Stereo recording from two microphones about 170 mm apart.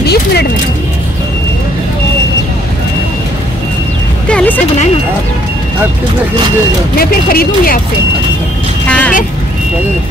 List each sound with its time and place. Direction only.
0.0 s a sound: 70° left (ahead or behind)
4.3 s vehicle: 5° left (ahead or behind)
7.0 s speech: 60° left (ahead or behind)
8.8 s vehicle: 5° left (ahead or behind)